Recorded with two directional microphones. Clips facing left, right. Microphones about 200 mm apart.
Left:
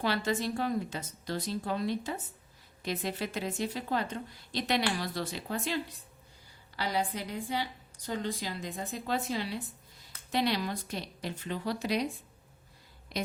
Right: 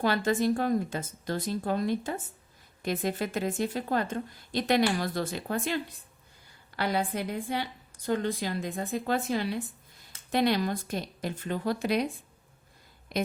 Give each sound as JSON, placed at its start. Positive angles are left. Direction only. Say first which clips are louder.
{"t": 0.0, "sound": "a woman's voice", "louder": "right 5 dB", "side_deg": -50}